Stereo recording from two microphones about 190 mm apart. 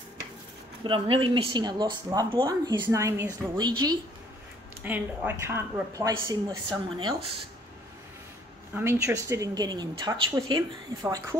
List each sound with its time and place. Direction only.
0.8 s speech: 30° right (ahead or behind)
4.8 s a woman's voice: 10° right (ahead or behind); by 7.3 s 25° right (ahead or behind)
8.7 s speech: 15° right (ahead or behind)